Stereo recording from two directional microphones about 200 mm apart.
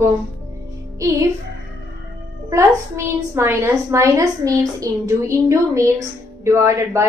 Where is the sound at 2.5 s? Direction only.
15° right (ahead or behind).